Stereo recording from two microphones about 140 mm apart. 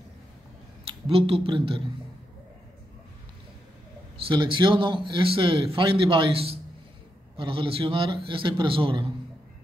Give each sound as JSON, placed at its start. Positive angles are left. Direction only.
{"t": 1.0, "sound": "speech", "side_deg": -40}
{"t": 4.3, "sound": "speech", "side_deg": -35}